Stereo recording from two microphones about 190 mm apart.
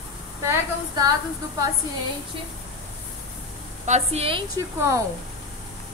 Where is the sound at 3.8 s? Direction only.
35° right (ahead or behind).